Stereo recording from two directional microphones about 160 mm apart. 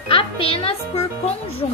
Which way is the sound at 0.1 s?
35° left (ahead or behind).